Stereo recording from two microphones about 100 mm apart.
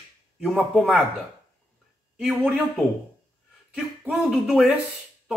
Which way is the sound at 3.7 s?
5° right (ahead or behind).